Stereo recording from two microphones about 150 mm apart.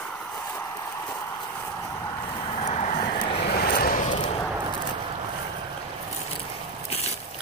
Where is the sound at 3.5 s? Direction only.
85° left.